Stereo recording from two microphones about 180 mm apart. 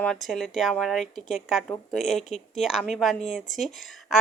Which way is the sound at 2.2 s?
40° left (ahead or behind).